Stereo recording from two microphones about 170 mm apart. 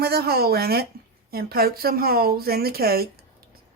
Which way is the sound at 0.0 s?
65° right (ahead or behind).